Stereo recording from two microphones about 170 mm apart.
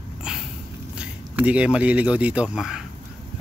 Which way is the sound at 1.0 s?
5° right (ahead or behind).